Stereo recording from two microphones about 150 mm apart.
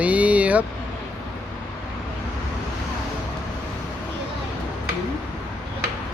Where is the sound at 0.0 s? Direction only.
10° right (ahead or behind).